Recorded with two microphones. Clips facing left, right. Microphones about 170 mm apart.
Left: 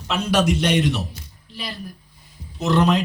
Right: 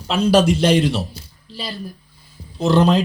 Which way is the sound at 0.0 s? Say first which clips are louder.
Right 5 dB; 30° right (ahead or behind).